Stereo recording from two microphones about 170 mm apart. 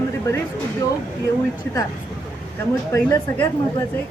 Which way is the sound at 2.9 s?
20° left (ahead or behind).